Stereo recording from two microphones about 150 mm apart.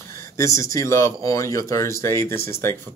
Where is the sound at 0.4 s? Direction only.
20° left (ahead or behind).